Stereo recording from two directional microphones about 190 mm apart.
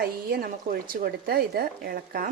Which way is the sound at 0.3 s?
50° right (ahead or behind).